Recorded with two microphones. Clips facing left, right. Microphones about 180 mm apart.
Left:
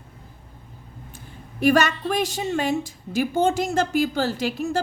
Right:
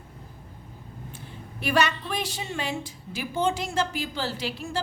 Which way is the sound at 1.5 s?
45° left (ahead or behind).